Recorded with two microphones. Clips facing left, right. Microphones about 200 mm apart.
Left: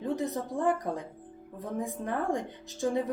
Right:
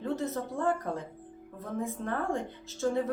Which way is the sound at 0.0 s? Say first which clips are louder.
Left 1 dB; 15° left (ahead or behind).